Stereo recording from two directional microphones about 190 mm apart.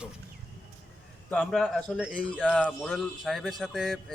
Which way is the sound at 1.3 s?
5° left (ahead or behind).